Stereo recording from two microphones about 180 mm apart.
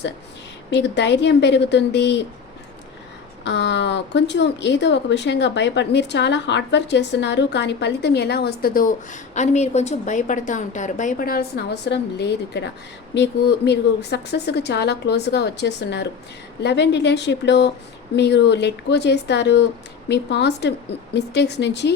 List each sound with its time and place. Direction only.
0.7 s speech: 70° left (ahead or behind)
3.4 s speech: 75° left (ahead or behind); by 8.9 s 55° left (ahead or behind)
9.3 s a woman's voice: 40° left (ahead or behind); by 21.9 s 70° left (ahead or behind)